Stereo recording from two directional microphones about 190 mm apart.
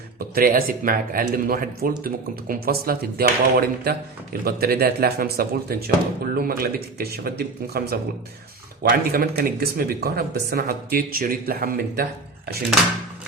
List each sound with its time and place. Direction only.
0.2 s speech: 50° right (ahead or behind)